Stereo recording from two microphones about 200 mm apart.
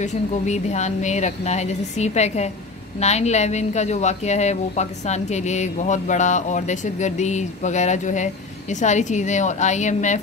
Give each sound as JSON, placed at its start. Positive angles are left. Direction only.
{"t": 0.0, "sound": "a woman's voice", "side_deg": 35}